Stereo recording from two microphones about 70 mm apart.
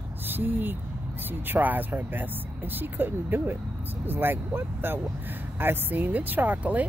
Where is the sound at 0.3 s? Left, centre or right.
Right.